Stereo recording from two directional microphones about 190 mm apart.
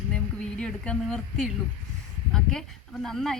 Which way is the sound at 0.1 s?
5° left (ahead or behind).